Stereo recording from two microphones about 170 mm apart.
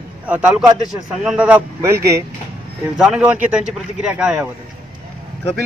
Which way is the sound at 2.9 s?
5° right (ahead or behind).